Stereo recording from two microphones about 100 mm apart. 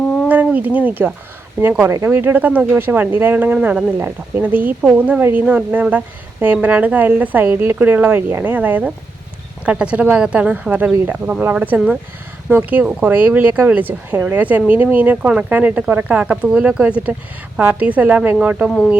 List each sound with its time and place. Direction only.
0.3 s speech: 15° right (ahead or behind)